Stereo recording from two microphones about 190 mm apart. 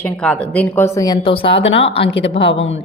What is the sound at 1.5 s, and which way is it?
Speech, 80° left.